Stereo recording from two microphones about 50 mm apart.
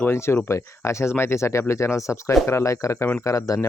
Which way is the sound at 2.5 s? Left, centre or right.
Left.